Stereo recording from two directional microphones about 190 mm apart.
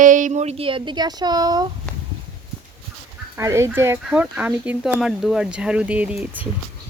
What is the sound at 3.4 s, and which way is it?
Speech, 15° right (ahead or behind).